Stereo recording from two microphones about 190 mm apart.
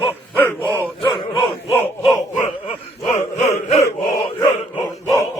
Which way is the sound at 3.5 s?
30° left (ahead or behind).